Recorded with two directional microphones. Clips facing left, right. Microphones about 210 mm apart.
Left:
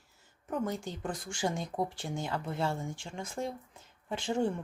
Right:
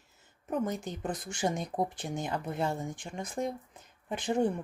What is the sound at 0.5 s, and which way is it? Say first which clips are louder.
Speech: right 2 dB; 20° right (ahead or behind).